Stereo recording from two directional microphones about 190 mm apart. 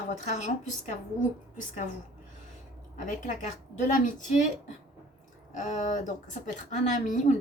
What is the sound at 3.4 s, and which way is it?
A woman's voice, 40° left (ahead or behind).